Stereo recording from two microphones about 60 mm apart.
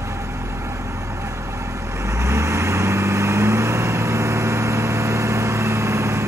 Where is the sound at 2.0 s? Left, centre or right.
Right.